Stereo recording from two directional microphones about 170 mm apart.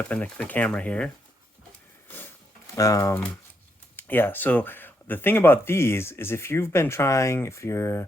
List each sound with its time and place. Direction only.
0.0 s speech: 10° left (ahead or behind)
2.0 s a sound: 10° left (ahead or behind)
2.7 s speech: 20° left (ahead or behind)